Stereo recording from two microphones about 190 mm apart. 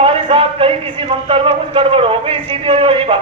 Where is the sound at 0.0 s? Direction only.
30° right (ahead or behind).